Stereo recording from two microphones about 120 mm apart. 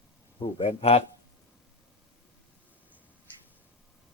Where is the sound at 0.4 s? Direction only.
55° left (ahead or behind).